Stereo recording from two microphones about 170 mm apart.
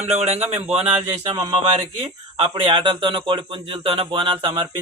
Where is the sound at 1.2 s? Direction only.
25° right (ahead or behind).